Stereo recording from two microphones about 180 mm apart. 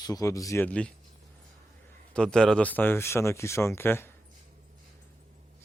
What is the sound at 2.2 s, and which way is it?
Speech, 5° left (ahead or behind).